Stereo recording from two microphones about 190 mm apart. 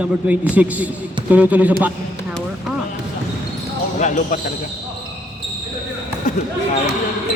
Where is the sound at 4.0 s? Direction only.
40° left (ahead or behind).